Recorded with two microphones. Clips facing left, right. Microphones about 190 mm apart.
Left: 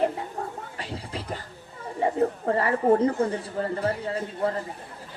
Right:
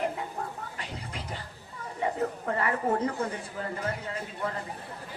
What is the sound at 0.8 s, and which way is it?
Music, 30° left (ahead or behind).